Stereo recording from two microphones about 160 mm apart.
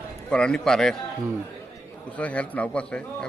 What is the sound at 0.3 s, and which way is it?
Speech, 5° left (ahead or behind).